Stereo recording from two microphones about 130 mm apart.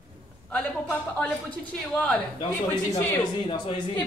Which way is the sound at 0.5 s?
10° left (ahead or behind).